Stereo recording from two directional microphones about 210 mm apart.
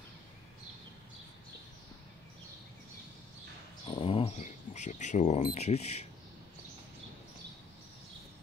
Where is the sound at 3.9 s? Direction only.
25° left (ahead or behind).